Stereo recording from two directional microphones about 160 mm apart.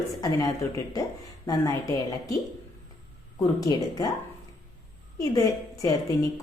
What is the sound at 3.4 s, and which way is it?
Speech, 20° left (ahead or behind).